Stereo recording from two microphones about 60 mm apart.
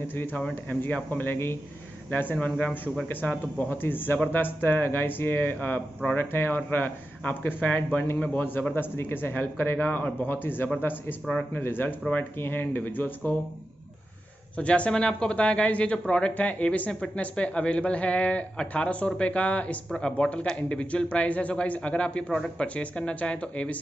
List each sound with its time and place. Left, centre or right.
0.1 s speech: left
3.8 s speech: left
8.7 s speech: left
14.6 s speech: centre